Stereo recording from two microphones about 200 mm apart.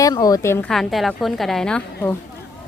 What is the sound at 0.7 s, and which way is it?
A woman's voice, centre (ahead or behind).